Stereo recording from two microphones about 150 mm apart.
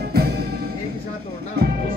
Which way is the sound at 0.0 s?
90° right.